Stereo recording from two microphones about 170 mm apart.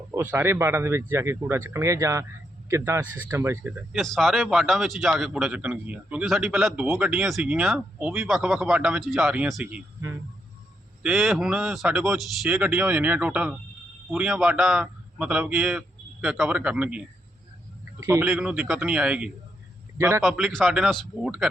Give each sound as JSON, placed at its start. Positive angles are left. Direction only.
{"t": 0.1, "sound": "a man's voice", "side_deg": -15}
{"t": 3.9, "sound": "a man's voice", "side_deg": 0}
{"t": 18.0, "sound": "a man's voice", "side_deg": -15}
{"t": 20.0, "sound": "a man's voice", "side_deg": -15}
{"t": 20.2, "sound": "a man's voice", "side_deg": 0}